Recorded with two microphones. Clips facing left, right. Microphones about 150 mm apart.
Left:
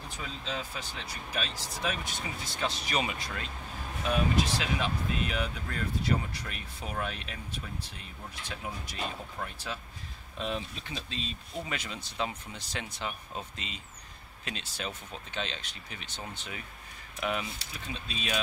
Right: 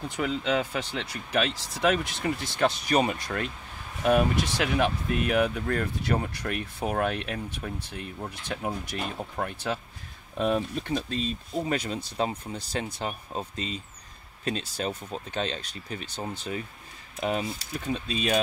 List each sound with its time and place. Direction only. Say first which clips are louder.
0.1 s speech: right 11 dB; 75° right (ahead or behind)
2.9 s speech: right 8 dB; 45° right (ahead or behind)